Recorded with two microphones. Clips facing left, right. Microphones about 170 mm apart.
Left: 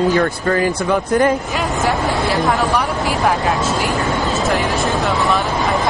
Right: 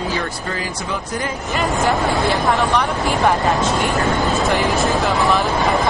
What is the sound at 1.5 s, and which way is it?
Speech, centre (ahead or behind).